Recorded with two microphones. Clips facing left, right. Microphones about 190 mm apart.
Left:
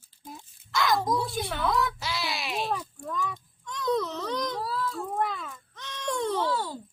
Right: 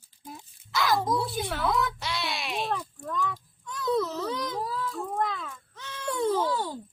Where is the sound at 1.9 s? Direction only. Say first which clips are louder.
Even; centre (ahead or behind).